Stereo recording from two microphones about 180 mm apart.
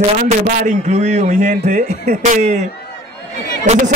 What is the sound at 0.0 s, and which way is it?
A man's voice, 40° right (ahead or behind).